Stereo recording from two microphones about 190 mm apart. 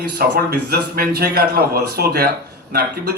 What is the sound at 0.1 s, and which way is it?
A man's voice, 55° right (ahead or behind).